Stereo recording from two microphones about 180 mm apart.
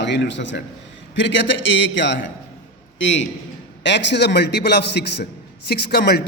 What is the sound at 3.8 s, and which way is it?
A man's voice, 75° left (ahead or behind).